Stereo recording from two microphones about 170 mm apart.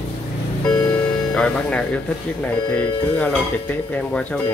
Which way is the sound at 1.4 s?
5° left (ahead or behind).